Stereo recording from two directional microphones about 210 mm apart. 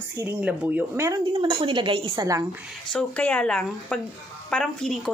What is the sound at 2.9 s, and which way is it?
A woman's voice, 5° left (ahead or behind).